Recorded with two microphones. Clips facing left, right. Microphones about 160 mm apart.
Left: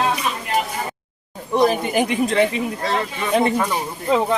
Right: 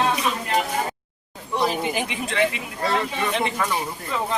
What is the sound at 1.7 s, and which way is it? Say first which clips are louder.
Speech: left 6 dB; 50° left (ahead or behind).